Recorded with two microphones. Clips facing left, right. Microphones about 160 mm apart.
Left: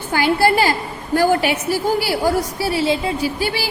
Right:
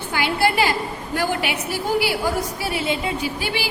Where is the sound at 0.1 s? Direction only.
40° left (ahead or behind).